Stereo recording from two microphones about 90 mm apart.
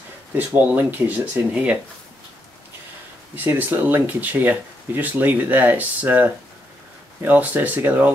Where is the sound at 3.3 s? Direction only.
20° right (ahead or behind).